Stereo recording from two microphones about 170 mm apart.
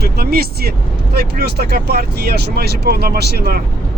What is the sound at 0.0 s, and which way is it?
Speech, 65° right (ahead or behind).